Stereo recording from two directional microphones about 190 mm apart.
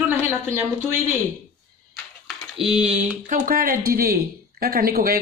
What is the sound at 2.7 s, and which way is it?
Speech, 35° right (ahead or behind).